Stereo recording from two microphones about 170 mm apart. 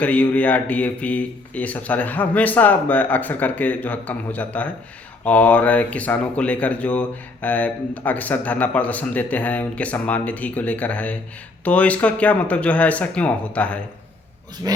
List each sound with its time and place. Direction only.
0.0 s speech: 10° left (ahead or behind)
14.6 s speech: 20° right (ahead or behind)